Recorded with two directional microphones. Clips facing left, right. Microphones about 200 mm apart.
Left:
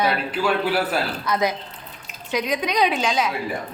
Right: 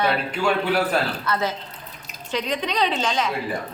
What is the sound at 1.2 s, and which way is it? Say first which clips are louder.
A woman's voice: left 2 dB; 15° left (ahead or behind).